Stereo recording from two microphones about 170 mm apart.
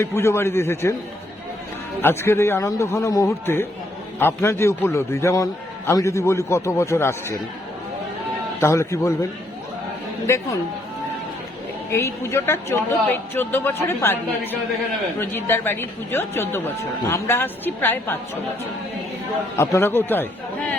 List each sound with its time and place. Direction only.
0.0 s a man's voice: 15° left (ahead or behind)
2.0 s a man's voice: 15° left (ahead or behind)
8.6 s a man's voice: 15° left (ahead or behind)
10.2 s a man's voice: 15° left (ahead or behind)
11.9 s a man's voice: 15° left (ahead or behind)
15.2 s a man's voice: 10° left (ahead or behind)
19.5 s a man's voice: 15° left (ahead or behind)